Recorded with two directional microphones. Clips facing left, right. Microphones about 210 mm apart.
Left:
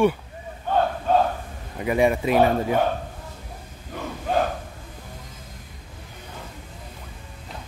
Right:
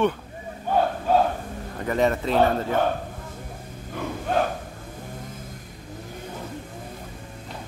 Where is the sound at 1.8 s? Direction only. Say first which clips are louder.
Left 2 dB; 10° left (ahead or behind).